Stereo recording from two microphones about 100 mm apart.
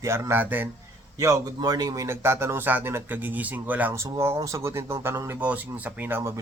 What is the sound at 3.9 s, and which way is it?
Speech, 25° right (ahead or behind).